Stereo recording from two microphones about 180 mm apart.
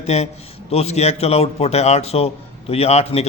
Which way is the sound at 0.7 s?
35° left (ahead or behind).